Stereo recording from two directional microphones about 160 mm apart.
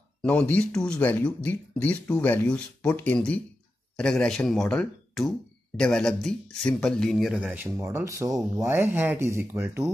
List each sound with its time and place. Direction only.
0.2 s speech: 10° left (ahead or behind); by 9.8 s 15° right (ahead or behind)